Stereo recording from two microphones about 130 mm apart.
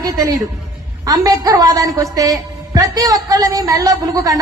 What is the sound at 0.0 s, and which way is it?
A woman's voice, 25° right (ahead or behind).